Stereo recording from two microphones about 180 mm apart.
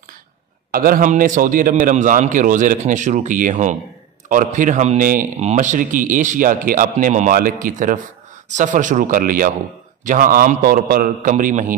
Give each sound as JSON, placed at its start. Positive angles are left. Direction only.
{"t": 0.7, "sound": "a man's voice", "side_deg": -55}